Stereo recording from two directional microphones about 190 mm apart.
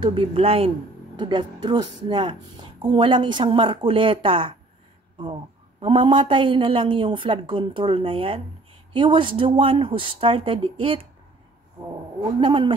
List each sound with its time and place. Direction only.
0.0 s a woman's voice: 30° right (ahead or behind)
12.4 s a woman's voice: 25° right (ahead or behind)